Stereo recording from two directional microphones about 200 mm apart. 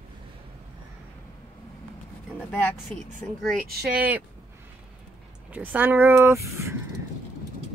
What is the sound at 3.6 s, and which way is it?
Speech, 50° right (ahead or behind).